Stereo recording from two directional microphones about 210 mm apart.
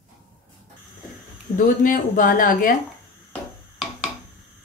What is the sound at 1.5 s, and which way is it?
Speech, 40° left (ahead or behind).